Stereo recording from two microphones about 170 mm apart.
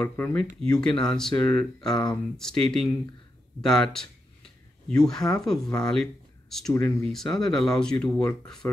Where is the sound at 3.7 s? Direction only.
Centre (ahead or behind).